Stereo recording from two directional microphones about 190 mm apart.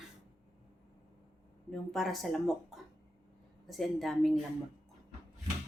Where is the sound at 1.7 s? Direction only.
Centre (ahead or behind).